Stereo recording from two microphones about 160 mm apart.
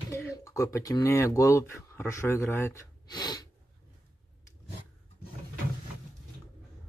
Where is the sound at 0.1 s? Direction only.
20° left (ahead or behind).